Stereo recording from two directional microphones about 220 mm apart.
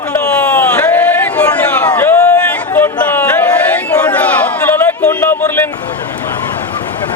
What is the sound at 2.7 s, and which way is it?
Chatter, 10° left (ahead or behind).